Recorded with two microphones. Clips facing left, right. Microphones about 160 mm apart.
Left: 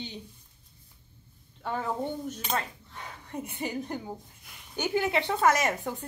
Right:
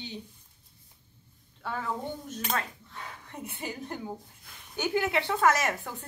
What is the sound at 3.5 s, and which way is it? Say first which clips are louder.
A woman's voice: left 3 dB; 15° left (ahead or behind).